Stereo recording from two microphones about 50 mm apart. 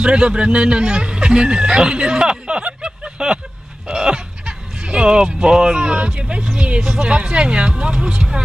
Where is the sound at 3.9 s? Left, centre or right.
Centre.